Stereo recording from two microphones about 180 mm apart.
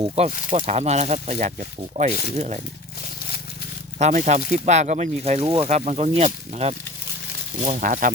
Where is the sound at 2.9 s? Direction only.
55° left (ahead or behind).